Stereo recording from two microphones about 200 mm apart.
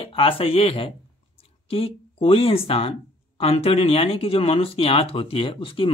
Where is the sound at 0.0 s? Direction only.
25° left (ahead or behind).